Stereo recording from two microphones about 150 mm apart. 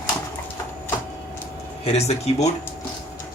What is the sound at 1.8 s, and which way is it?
Speech, 45° left (ahead or behind).